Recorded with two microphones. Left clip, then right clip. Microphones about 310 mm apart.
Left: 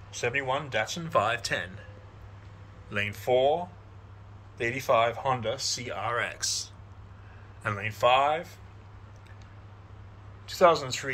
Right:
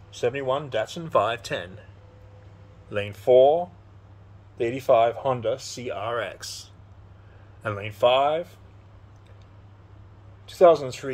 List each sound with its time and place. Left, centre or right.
0.1 s speech: right
2.9 s speech: right
10.4 s speech: right